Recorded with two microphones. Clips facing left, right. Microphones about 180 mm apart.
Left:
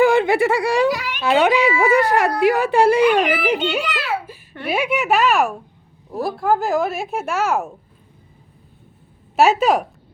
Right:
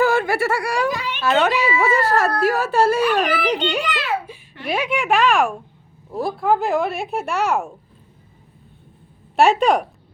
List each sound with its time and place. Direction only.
0.0 s speech: 20° left (ahead or behind)
3.4 s children playing: 5° left (ahead or behind)
4.6 s speech: 5° left (ahead or behind)
9.3 s speech: centre (ahead or behind)